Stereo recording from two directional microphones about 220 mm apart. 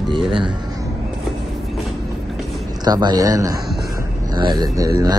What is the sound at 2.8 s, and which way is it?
A man's voice, 15° right (ahead or behind).